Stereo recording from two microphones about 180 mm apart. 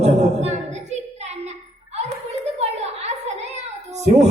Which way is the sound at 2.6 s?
35° right (ahead or behind).